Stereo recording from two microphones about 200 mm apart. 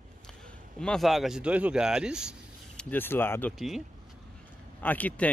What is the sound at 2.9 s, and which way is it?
Speech, 10° left (ahead or behind).